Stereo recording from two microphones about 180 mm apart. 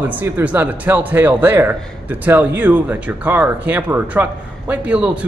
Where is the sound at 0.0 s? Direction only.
10° right (ahead or behind).